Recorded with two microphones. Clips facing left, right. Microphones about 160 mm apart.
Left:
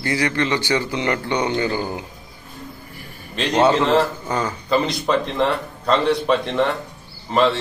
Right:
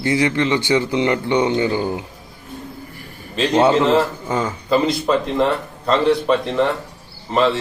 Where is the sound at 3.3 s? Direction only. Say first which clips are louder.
Right 2 dB; 5° right (ahead or behind).